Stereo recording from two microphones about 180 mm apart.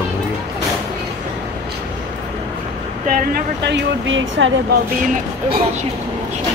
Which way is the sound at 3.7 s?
80° right.